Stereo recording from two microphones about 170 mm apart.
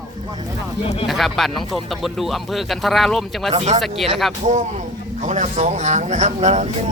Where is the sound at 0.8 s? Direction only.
35° left (ahead or behind).